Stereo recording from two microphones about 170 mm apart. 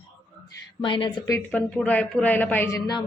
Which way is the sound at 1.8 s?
5° left (ahead or behind).